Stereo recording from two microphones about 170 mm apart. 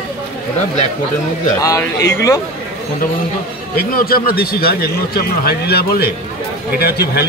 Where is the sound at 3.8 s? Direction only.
60° left (ahead or behind).